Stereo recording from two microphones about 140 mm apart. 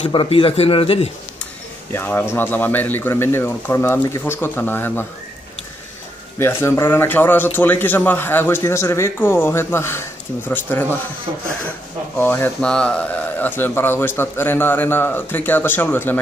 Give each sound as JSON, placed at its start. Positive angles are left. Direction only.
{"t": 0.0, "sound": "speech", "side_deg": 40}
{"t": 1.9, "sound": "a man's voice", "side_deg": 15}
{"t": 6.3, "sound": "a man's voice", "side_deg": 20}
{"t": 12.2, "sound": "a man's voice", "side_deg": 15}